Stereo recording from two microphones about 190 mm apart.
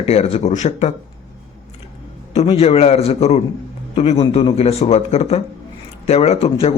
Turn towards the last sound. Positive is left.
turn(degrees=30)  # may be behind; listen again after turning